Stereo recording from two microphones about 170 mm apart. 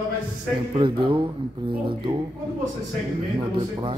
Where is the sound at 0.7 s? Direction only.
30° right (ahead or behind).